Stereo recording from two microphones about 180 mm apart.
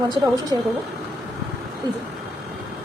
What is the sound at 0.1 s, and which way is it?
Speech, 20° right (ahead or behind).